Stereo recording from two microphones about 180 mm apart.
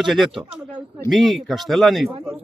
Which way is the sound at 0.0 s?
Centre (ahead or behind).